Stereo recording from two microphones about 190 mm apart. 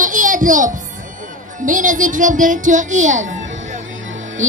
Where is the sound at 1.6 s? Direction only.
45° right (ahead or behind).